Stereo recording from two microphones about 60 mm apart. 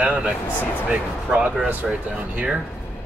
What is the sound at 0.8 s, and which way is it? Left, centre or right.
Speech, centre.